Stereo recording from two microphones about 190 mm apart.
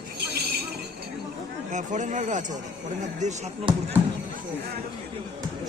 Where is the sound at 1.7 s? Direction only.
40° right (ahead or behind).